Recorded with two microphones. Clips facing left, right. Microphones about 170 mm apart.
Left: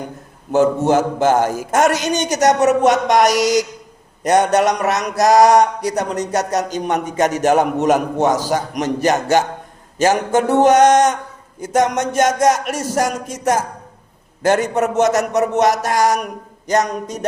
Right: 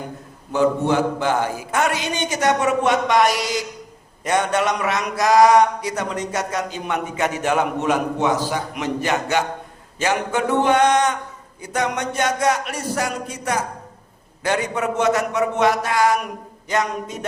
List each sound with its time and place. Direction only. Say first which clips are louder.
0.5 s a man's voice: left 4 dB; 45° left (ahead or behind)